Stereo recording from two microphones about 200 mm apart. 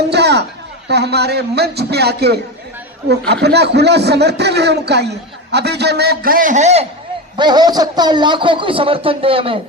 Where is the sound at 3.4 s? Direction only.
55° right (ahead or behind); by 6.8 s 35° right (ahead or behind).